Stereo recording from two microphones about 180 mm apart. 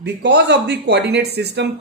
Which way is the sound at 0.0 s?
70° right (ahead or behind).